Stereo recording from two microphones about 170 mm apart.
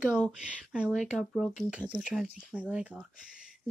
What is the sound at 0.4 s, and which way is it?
Speech, 5° right (ahead or behind).